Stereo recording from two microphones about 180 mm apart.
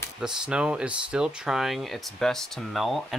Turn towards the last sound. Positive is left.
turn(degrees=0)  # may be behind; listen again after turning